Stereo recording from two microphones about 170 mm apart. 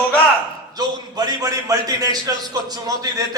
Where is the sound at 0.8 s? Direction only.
25° right (ahead or behind).